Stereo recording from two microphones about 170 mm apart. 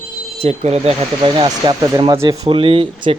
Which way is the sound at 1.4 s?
25° right (ahead or behind).